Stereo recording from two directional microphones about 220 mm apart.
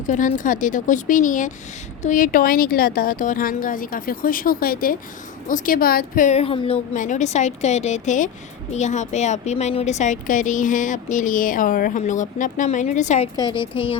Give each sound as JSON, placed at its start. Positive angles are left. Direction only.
{"t": 0.1, "sound": "speech", "side_deg": 35}
{"t": 13.3, "sound": "a woman's voice", "side_deg": 20}